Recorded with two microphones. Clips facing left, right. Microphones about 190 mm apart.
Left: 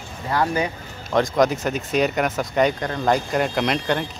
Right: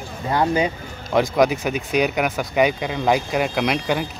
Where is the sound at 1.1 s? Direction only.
5° right (ahead or behind).